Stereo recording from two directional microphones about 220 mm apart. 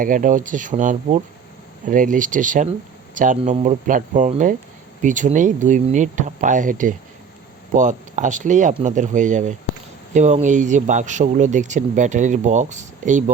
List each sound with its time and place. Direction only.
0.0 s speech: 35° right (ahead or behind)